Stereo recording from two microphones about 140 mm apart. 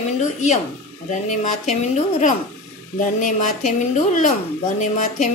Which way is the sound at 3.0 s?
65° left (ahead or behind).